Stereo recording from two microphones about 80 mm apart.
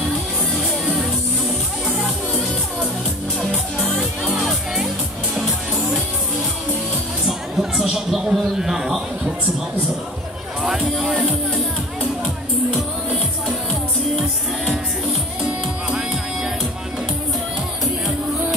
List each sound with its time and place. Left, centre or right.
0.6 s music: centre
3.3 s music: centre
7.2 s a sound: centre
10.6 s speech: centre
12.7 s music: centre
15.9 s music: centre